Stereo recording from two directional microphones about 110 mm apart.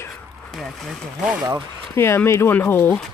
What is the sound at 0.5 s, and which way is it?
Speech, 5° right (ahead or behind).